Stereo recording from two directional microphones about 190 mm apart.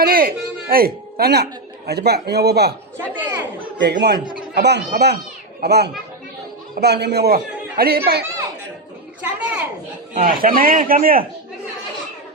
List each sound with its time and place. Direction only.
0.0 s a man's voice: 50° right (ahead or behind)
3.3 s a sound: 65° right (ahead or behind)
4.5 s a man's voice: 60° right (ahead or behind)
9.2 s a child's voice: 5° right (ahead or behind)
10.2 s a man's voice: 50° right (ahead or behind)